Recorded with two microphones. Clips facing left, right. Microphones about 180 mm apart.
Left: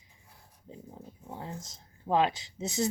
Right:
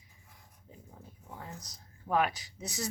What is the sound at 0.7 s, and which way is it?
Speech, 25° left (ahead or behind).